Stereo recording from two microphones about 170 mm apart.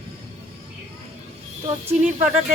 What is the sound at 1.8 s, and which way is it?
Speech, 10° right (ahead or behind).